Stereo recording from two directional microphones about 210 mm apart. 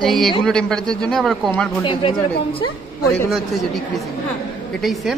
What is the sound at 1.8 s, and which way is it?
Speech, 25° left (ahead or behind).